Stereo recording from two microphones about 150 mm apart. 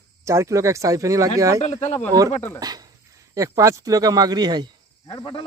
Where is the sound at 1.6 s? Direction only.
45° left (ahead or behind).